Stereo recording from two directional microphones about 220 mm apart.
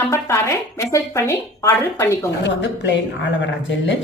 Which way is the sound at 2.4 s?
55° left (ahead or behind).